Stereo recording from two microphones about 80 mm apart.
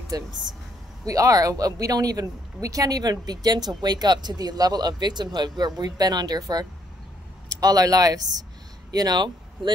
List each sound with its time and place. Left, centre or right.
0.1 s speech: right
1.0 s speech: right